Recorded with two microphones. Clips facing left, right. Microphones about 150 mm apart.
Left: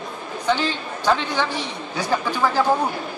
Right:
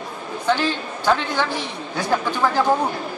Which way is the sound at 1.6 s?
10° left (ahead or behind).